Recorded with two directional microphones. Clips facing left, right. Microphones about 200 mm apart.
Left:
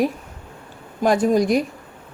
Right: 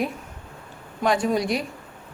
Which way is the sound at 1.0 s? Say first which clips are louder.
Left 5 dB; 45° left (ahead or behind).